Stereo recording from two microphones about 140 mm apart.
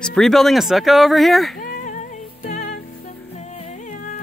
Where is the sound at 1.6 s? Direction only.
70° left (ahead or behind).